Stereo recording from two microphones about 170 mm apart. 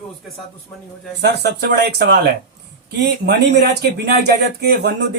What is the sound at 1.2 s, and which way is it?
Speech, 75° right (ahead or behind).